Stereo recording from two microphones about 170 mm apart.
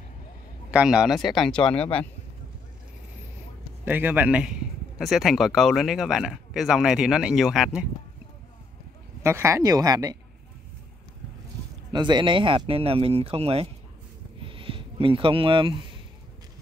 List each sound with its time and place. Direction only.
0.7 s a man's voice: 5° right (ahead or behind)
3.8 s a man's voice: 10° right (ahead or behind)
9.2 s speech: 15° right (ahead or behind)
11.9 s speech: 25° right (ahead or behind)
14.4 s a sound: 30° right (ahead or behind)